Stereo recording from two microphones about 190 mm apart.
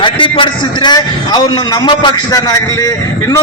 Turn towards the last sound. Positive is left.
turn(degrees=15)  # may be behind; listen again after turning